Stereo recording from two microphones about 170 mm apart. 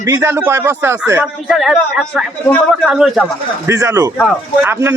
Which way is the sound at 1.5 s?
Centre (ahead or behind).